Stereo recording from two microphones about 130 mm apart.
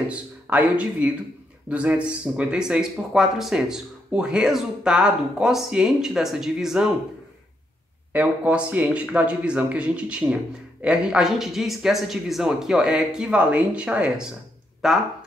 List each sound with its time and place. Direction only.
0.1 s speech: 10° right (ahead or behind)
8.1 s speech: 10° right (ahead or behind)